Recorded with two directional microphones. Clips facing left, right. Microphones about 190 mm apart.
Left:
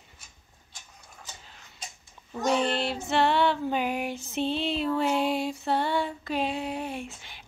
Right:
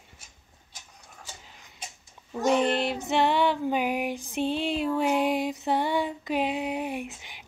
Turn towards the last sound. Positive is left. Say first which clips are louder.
# right 2 dB
turn(degrees=-15)  # may be behind; listen again after turning